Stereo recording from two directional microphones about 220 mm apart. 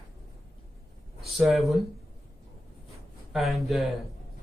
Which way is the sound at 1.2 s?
Centre (ahead or behind).